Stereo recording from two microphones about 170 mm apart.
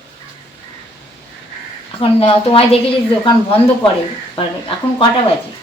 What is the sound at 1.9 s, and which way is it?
Speech, 30° left (ahead or behind).